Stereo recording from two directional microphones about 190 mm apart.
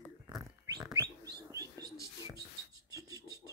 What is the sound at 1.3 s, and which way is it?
Bird, 15° right (ahead or behind).